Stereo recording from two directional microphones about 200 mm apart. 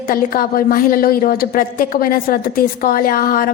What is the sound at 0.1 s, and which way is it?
A woman's voice, 45° left (ahead or behind).